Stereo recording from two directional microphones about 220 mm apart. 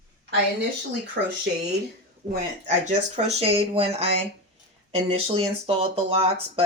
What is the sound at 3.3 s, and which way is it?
Speech, 30° right (ahead or behind).